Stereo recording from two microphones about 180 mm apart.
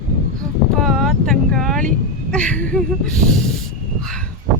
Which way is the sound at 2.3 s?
5° left (ahead or behind).